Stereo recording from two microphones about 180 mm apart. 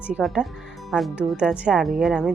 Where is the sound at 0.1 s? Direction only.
Centre (ahead or behind).